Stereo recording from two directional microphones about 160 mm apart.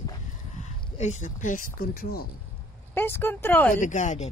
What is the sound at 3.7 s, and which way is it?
Speech, 50° left (ahead or behind).